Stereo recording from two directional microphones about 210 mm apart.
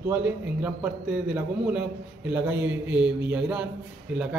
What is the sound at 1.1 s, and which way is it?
A man's voice, 5° right (ahead or behind).